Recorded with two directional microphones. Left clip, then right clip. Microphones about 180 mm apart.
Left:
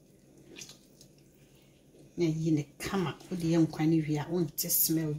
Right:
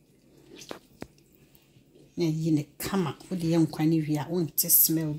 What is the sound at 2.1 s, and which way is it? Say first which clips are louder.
Speech: right 2 dB; 60° right (ahead or behind).